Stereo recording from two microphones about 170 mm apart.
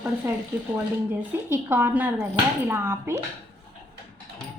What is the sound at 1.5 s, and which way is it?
Speech, 10° right (ahead or behind).